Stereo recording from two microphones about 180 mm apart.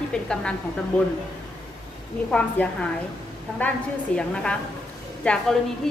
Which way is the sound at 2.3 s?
5° left (ahead or behind).